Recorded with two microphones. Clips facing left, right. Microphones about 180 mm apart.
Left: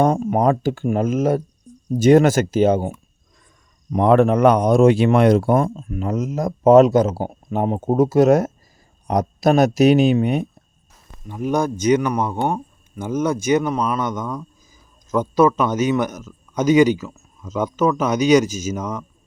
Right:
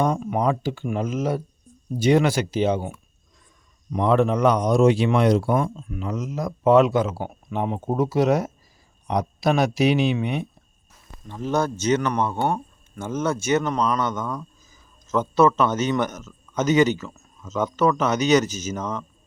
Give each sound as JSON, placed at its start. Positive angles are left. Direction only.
{"t": 0.0, "sound": "speech", "side_deg": 45}
{"t": 3.9, "sound": "speech", "side_deg": 55}
{"t": 11.3, "sound": "speech", "side_deg": 15}